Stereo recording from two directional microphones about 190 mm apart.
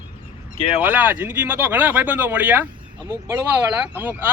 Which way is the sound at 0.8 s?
10° right (ahead or behind).